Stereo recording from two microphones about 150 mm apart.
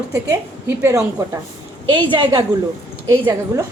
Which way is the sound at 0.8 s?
20° right (ahead or behind).